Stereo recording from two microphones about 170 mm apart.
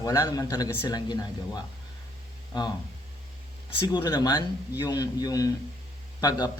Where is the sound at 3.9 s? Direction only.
25° left (ahead or behind).